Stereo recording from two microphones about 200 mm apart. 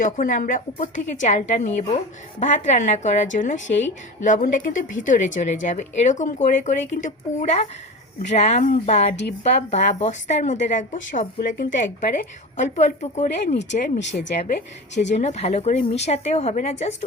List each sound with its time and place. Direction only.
0.0 s speech: 40° left (ahead or behind)
15.1 s speech: 35° left (ahead or behind)